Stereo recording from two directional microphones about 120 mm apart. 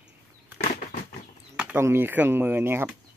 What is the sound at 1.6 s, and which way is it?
Speech, 15° right (ahead or behind).